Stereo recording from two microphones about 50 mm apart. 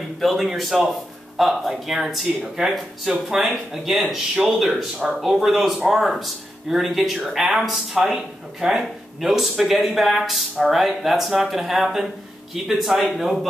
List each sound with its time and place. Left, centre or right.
0.2 s speech: centre